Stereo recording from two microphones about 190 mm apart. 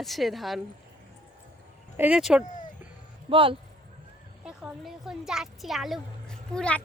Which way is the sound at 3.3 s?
25° right (ahead or behind).